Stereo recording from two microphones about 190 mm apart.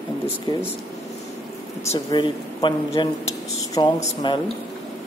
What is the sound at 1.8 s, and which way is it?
Speech, 25° left (ahead or behind).